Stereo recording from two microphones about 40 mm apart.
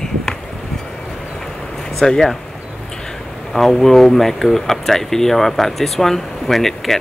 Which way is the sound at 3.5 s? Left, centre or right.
Centre.